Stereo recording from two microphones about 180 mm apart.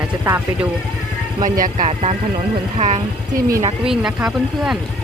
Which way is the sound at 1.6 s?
45° right (ahead or behind).